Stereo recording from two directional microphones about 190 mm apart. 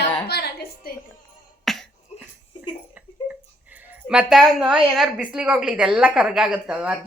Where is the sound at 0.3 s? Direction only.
55° left (ahead or behind).